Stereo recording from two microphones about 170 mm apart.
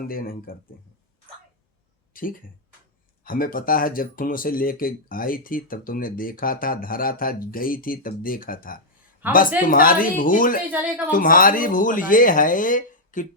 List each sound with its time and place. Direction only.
0.1 s speech: 60° left (ahead or behind)
2.1 s speech: 55° left (ahead or behind)
9.2 s speech: 10° right (ahead or behind)
9.6 s speech: 55° left (ahead or behind)
10.7 s speech: 10° right (ahead or behind)
11.1 s speech: 55° left (ahead or behind)